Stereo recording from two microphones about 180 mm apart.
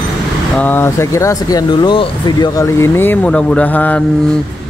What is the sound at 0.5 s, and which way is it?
Speech, 10° left (ahead or behind).